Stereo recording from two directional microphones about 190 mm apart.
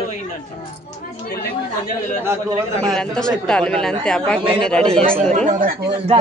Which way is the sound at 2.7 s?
5° left (ahead or behind).